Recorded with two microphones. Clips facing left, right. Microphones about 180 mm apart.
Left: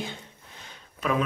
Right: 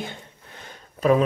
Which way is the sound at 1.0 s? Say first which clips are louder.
Right 8 dB; 35° right (ahead or behind).